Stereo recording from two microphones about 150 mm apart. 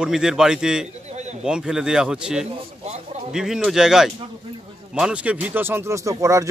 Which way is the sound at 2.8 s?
45° right (ahead or behind).